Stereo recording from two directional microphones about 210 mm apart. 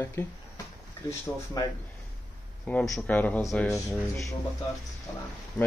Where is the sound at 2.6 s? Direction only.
5° left (ahead or behind).